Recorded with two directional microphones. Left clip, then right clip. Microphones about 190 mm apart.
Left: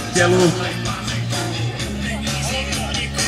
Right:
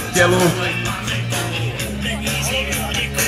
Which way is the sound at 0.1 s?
15° right (ahead or behind).